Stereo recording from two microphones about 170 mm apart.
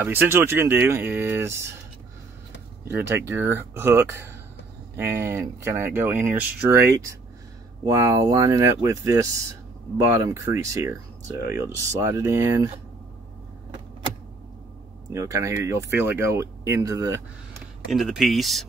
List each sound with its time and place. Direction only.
0.0 s speech: 10° right (ahead or behind)
2.9 s speech: 10° right (ahead or behind)
15.1 s speech: 20° right (ahead or behind)
17.8 s speech: centre (ahead or behind)